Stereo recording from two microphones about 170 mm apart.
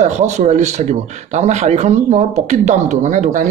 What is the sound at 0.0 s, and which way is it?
A man's voice, 45° right (ahead or behind).